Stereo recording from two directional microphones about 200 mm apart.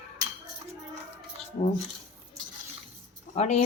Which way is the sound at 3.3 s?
35° left (ahead or behind).